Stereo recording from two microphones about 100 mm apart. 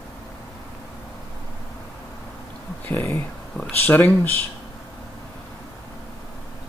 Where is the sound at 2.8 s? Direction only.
20° left (ahead or behind).